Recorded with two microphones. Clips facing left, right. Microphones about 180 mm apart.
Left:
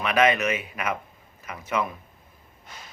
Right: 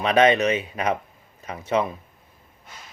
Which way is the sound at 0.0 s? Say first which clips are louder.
Right 4 dB; 30° right (ahead or behind).